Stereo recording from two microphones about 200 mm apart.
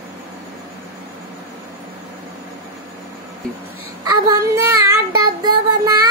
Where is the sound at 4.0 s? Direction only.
15° right (ahead or behind).